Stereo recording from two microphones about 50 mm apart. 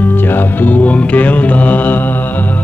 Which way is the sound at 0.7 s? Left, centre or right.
Left.